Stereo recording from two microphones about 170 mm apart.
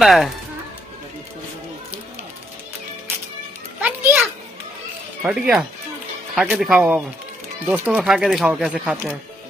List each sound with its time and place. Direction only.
0.0 s speech: centre (ahead or behind)
3.8 s children playing: 10° right (ahead or behind)
5.2 s speech: 5° right (ahead or behind)